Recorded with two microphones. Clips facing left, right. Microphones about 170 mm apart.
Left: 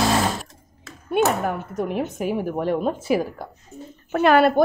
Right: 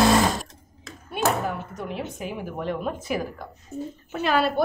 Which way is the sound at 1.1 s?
55° left (ahead or behind).